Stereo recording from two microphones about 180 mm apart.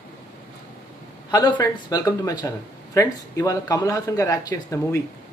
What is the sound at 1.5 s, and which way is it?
Speech, 20° left (ahead or behind).